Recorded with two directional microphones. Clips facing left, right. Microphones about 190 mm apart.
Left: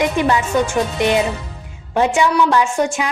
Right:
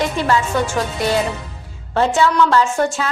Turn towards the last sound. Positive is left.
turn(degrees=15)  # may be behind; listen again after turning